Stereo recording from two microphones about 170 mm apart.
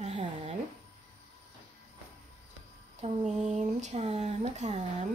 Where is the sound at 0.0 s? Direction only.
40° right (ahead or behind).